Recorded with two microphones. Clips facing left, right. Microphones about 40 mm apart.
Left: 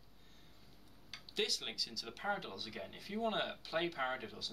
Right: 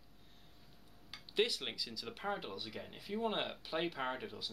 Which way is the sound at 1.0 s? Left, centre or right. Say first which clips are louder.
Right 4 dB; centre.